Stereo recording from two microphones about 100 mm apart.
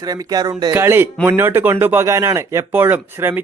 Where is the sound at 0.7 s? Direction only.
25° right (ahead or behind).